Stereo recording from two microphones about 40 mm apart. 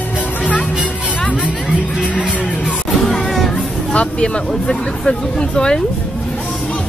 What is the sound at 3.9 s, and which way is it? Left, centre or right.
Speech, left.